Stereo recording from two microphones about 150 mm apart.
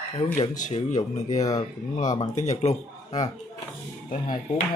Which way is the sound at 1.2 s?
25° left (ahead or behind).